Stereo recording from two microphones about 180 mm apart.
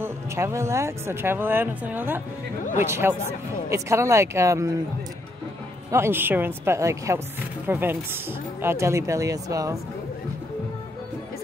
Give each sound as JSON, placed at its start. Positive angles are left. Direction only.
{"t": 0.0, "sound": "speech", "side_deg": -15}
{"t": 5.9, "sound": "speech", "side_deg": -15}